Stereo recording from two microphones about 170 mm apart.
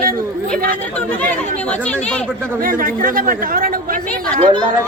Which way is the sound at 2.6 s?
55° right (ahead or behind).